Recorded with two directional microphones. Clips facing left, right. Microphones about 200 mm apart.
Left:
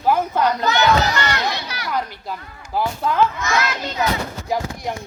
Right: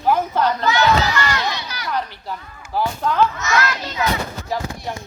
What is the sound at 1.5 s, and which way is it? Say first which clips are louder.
Speech: left 1 dB; 60° left (ahead or behind).